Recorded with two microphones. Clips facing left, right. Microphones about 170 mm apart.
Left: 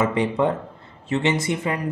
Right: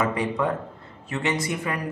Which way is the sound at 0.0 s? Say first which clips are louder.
Left 4 dB; 25° left (ahead or behind).